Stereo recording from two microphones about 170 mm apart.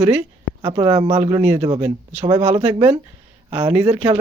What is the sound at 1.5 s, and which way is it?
Speech, 30° right (ahead or behind).